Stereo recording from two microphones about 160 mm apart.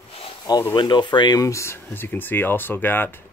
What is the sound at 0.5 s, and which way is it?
Speech, 25° left (ahead or behind).